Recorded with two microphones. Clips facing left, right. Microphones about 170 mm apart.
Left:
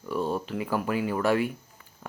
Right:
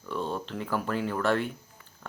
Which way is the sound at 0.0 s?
10° left (ahead or behind).